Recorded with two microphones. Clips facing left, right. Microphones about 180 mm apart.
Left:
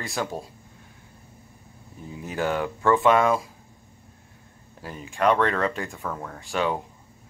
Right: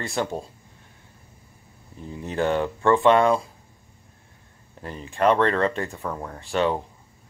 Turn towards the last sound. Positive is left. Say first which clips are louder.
# right 3 dB
turn(degrees=0)  # may be behind; listen again after turning